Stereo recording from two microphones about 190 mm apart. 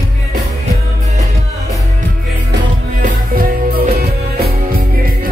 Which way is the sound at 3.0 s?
50° right (ahead or behind).